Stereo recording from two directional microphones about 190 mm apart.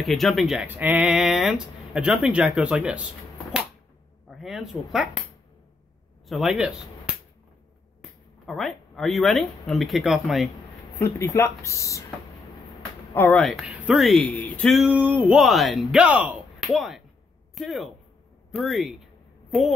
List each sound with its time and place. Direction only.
0.0 s speech: centre (ahead or behind)
4.3 s speech: centre (ahead or behind)
6.2 s speech: centre (ahead or behind)
8.0 s speech: centre (ahead or behind)
11.0 s speech: 15° left (ahead or behind)
13.1 s speech: 10° left (ahead or behind)
13.4 s speech: centre (ahead or behind)